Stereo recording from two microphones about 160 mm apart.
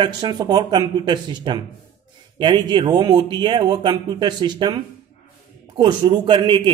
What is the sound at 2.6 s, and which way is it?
Speech, 25° right (ahead or behind).